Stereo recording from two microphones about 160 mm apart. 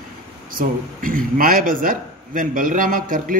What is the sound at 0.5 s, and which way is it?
Speech, 60° right (ahead or behind).